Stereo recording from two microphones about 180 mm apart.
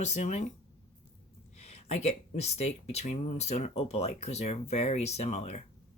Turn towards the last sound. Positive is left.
turn(degrees=35)  # may be behind; listen again after turning